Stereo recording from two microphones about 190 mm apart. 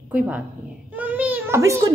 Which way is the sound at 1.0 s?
10° right (ahead or behind).